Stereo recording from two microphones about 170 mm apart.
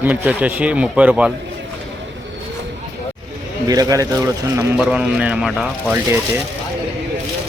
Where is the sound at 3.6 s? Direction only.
20° right (ahead or behind).